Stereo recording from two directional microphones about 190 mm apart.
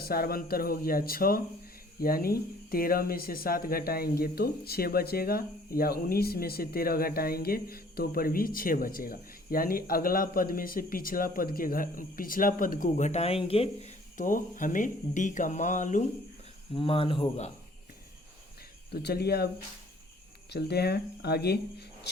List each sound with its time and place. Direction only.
0.0 s speech: 50° left (ahead or behind)
16.7 s speech: 30° left (ahead or behind)
18.9 s speech: 60° left (ahead or behind)
20.5 s speech: 60° left (ahead or behind)